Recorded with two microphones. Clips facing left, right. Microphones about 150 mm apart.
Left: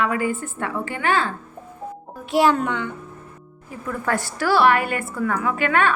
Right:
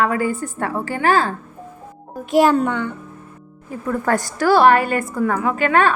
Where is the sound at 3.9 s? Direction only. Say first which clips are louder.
Right 5 dB; 45° right (ahead or behind).